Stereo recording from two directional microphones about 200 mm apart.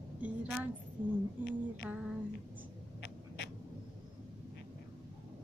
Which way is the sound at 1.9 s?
10° right (ahead or behind).